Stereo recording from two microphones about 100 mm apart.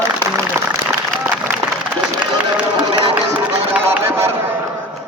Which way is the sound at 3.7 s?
25° right (ahead or behind).